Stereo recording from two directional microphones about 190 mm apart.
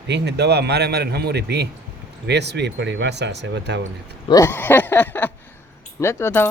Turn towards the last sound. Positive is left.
turn(degrees=10)  # may be behind; listen again after turning